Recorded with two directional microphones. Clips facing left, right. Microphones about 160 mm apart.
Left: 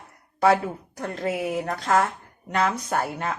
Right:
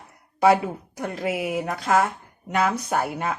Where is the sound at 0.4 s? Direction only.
10° right (ahead or behind).